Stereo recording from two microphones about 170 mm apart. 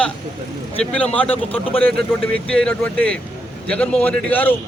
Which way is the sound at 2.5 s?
5° left (ahead or behind).